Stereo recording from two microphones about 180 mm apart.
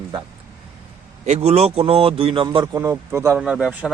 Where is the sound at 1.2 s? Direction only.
40° right (ahead or behind).